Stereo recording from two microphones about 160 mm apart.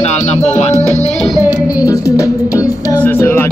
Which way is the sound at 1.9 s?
20° left (ahead or behind).